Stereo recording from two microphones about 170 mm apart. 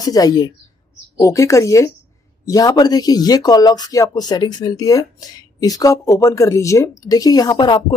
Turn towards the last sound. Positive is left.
turn(degrees=25)  # may be behind; listen again after turning